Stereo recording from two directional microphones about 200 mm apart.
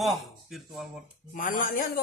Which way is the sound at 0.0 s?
Centre (ahead or behind).